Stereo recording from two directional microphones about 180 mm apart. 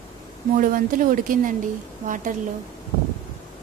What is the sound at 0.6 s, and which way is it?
A woman's voice, 50° right (ahead or behind).